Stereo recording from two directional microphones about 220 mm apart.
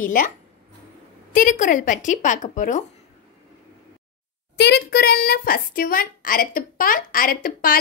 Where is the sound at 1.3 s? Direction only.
35° left (ahead or behind).